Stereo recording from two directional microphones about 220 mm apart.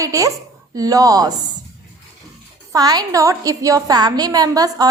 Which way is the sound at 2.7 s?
15° right (ahead or behind).